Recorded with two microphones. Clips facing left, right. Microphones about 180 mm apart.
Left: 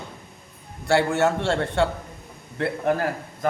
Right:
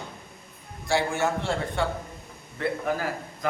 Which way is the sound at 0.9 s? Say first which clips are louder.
Left 5 dB; 70° left (ahead or behind).